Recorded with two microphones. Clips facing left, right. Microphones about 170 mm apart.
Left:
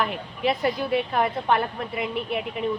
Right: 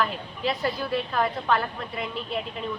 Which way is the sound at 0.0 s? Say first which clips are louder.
Left 2 dB; 20° left (ahead or behind).